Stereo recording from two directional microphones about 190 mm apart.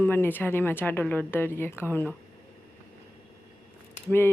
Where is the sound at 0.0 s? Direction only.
10° left (ahead or behind).